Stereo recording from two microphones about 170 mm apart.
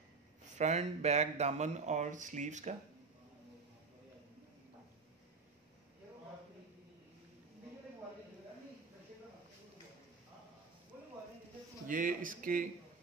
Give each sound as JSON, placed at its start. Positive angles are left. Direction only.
{"t": 0.6, "sound": "speech", "side_deg": -40}
{"t": 11.9, "sound": "speech", "side_deg": -55}